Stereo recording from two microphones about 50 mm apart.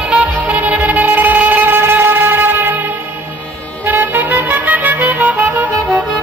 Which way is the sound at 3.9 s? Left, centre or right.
Right.